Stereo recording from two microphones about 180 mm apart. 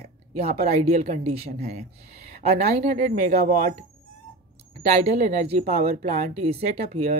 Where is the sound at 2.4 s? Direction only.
40° right (ahead or behind).